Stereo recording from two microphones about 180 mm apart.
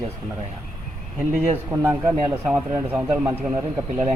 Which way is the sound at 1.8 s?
10° right (ahead or behind).